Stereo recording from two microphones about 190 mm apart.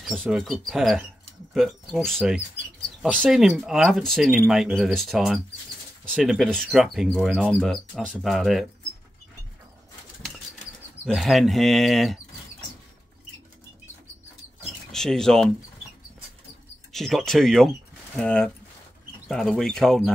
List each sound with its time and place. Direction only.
0.2 s speech: centre (ahead or behind)
11.1 s speech: centre (ahead or behind)
14.9 s speech: 5° left (ahead or behind)
16.9 s speech: centre (ahead or behind)